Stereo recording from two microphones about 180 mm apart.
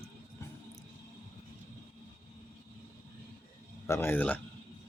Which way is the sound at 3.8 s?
15° left (ahead or behind).